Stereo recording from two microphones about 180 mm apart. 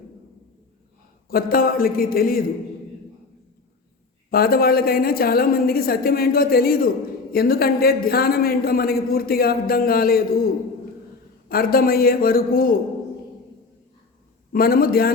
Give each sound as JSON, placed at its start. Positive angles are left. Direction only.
{"t": 1.3, "sound": "speech", "side_deg": 55}
{"t": 4.3, "sound": "a man's voice", "side_deg": 55}
{"t": 11.4, "sound": "a man's voice", "side_deg": 55}
{"t": 14.5, "sound": "a man's voice", "side_deg": 55}